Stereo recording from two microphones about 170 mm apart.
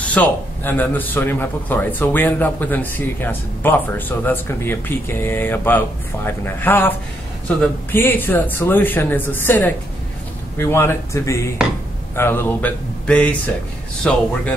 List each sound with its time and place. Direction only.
0.0 s a man's voice: 10° left (ahead or behind)